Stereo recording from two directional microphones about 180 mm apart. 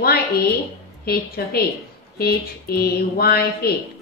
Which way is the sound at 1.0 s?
60° left (ahead or behind).